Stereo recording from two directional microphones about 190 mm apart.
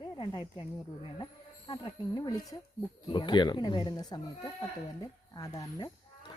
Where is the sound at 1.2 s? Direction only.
25° left (ahead or behind).